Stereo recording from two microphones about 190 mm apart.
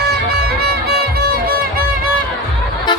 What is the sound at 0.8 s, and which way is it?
Music, 55° right (ahead or behind).